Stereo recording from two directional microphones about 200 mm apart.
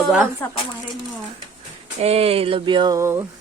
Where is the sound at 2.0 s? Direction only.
30° right (ahead or behind); by 3.2 s 15° right (ahead or behind).